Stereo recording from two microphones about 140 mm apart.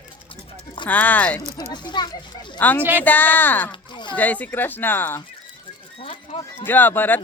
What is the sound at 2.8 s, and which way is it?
Speech, 10° right (ahead or behind).